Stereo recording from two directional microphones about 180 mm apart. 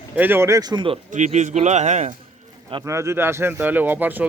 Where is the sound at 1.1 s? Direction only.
40° right (ahead or behind).